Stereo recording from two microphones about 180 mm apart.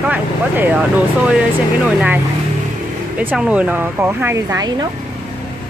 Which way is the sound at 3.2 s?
10° right (ahead or behind).